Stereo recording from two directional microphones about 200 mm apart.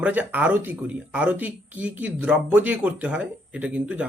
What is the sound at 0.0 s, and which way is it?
Speech, 10° right (ahead or behind).